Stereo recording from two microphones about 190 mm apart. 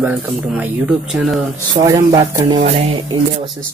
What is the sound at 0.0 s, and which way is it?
A man's voice, 10° right (ahead or behind).